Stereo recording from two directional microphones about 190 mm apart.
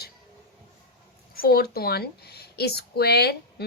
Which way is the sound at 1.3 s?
50° left (ahead or behind).